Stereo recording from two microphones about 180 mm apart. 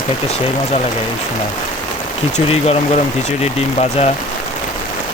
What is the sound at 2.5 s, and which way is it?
Speech, 35° left (ahead or behind).